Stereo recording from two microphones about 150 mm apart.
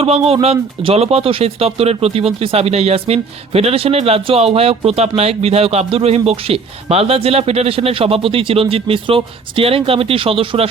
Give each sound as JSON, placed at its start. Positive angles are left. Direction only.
{"t": 0.0, "sound": "speech", "side_deg": -40}